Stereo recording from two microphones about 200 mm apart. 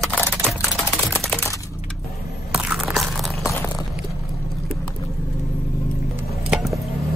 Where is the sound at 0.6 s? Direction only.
15° left (ahead or behind).